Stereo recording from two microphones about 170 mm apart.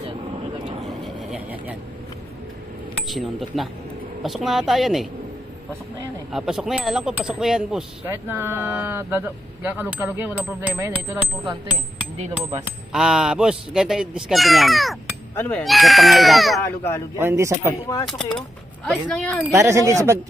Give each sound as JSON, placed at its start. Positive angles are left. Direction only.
{"t": 1.0, "sound": "vehicle", "side_deg": -5}
{"t": 3.1, "sound": "speech", "side_deg": 0}
{"t": 6.3, "sound": "speech", "side_deg": 0}
{"t": 12.9, "sound": "speech", "side_deg": -5}
{"t": 17.2, "sound": "speech", "side_deg": -15}
{"t": 18.0, "sound": "speech", "side_deg": 5}
{"t": 19.5, "sound": "speech", "side_deg": -20}